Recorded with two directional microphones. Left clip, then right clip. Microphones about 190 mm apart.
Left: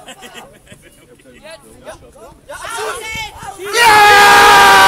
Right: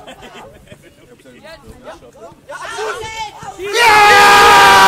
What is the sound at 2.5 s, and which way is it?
Speech, 20° left (ahead or behind).